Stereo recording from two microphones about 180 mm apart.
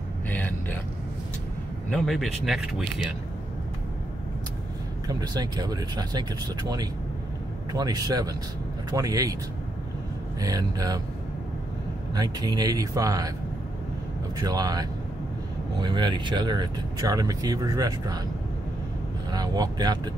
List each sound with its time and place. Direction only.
0.3 s a sound: 10° left (ahead or behind)
1.9 s speech: centre (ahead or behind)
5.0 s speech: 20° right (ahead or behind)
10.4 s speech: 20° right (ahead or behind)
12.1 s speech: 20° right (ahead or behind)
14.4 s speech: 20° right (ahead or behind)
19.3 s speech: 20° right (ahead or behind)